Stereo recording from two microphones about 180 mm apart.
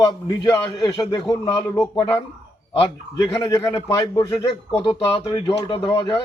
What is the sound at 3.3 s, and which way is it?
A man's voice, 20° left (ahead or behind).